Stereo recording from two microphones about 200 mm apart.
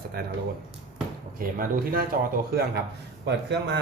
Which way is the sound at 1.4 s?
45° right (ahead or behind).